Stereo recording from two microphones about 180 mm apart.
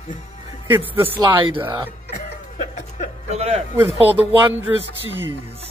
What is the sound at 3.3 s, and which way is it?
Speech, 35° right (ahead or behind).